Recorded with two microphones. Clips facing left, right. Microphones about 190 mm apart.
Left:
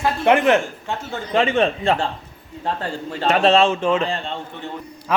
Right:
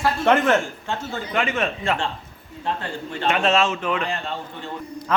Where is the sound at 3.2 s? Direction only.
35° left (ahead or behind).